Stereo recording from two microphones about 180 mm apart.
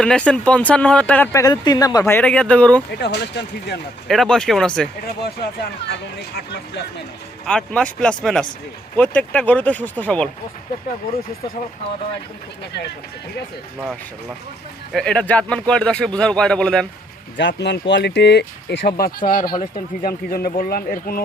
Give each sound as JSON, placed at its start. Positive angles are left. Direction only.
{"t": 0.0, "sound": "speech", "side_deg": 5}
{"t": 3.0, "sound": "speech", "side_deg": 65}
{"t": 4.1, "sound": "a man's voice", "side_deg": 0}
{"t": 5.2, "sound": "speech", "side_deg": 65}
{"t": 7.4, "sound": "a man's voice", "side_deg": 5}
{"t": 14.9, "sound": "a man's voice", "side_deg": 5}
{"t": 17.3, "sound": "speech", "side_deg": 75}